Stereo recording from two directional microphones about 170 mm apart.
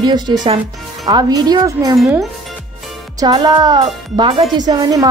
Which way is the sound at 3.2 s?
25° right (ahead or behind).